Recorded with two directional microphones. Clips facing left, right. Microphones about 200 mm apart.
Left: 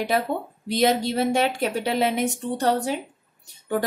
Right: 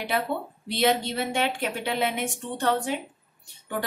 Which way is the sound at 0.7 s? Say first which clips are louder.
Left 3 dB; 40° left (ahead or behind).